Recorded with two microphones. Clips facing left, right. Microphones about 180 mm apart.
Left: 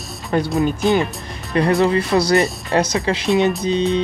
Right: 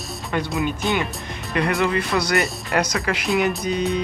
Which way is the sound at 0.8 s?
Centre (ahead or behind).